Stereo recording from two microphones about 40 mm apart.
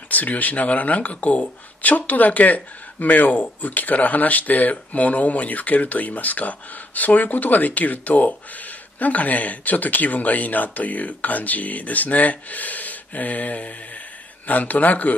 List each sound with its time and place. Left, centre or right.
0.1 s speech: left